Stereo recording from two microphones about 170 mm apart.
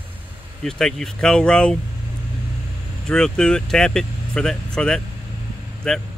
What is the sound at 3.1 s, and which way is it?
Speech, 5° left (ahead or behind).